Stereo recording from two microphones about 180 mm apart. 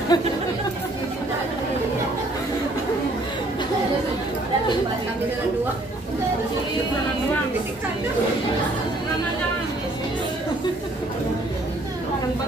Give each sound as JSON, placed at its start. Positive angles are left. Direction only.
{"t": 0.1, "sound": "speech", "side_deg": 20}